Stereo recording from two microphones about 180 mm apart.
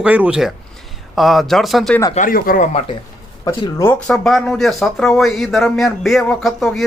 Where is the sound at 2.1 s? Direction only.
50° left (ahead or behind).